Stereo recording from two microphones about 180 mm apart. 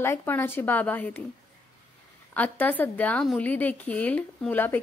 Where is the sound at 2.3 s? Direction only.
10° left (ahead or behind).